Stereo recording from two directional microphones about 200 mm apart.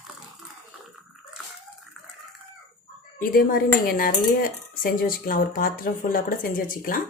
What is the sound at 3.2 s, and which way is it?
Speech, 45° left (ahead or behind).